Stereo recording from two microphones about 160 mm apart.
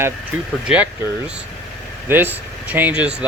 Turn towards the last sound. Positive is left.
turn(degrees=-10)  # may be behind; listen again after turning